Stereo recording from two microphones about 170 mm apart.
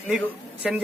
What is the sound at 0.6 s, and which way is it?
Speech, centre (ahead or behind).